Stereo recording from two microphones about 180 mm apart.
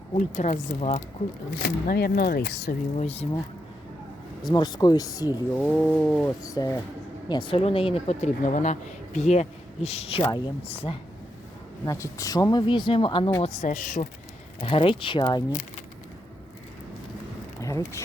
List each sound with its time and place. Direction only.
0.1 s speech: 40° left (ahead or behind)
1.6 s speech: 60° left (ahead or behind)
3.0 s speech: 35° left (ahead or behind)
4.4 s speech: 25° left (ahead or behind)
5.5 s a sound: 10° left (ahead or behind)
6.4 s a sound: 20° left (ahead or behind)
7.3 s speech: 25° left (ahead or behind)
11.9 s speech: 15° left (ahead or behind)
13.4 s speech: 40° left (ahead or behind)
14.6 s speech: 30° left (ahead or behind)
17.6 s speech: 15° left (ahead or behind)